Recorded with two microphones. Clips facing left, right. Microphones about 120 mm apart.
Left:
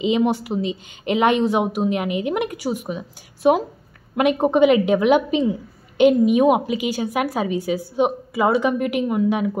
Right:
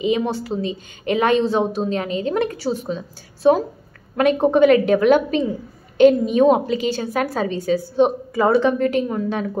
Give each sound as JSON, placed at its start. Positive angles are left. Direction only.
{"t": 0.0, "sound": "a woman's voice", "side_deg": 20}